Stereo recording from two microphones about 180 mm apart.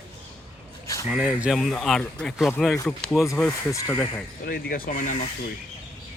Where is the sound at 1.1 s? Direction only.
5° right (ahead or behind).